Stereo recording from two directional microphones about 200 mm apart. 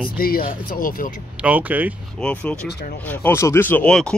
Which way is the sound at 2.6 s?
55° left (ahead or behind).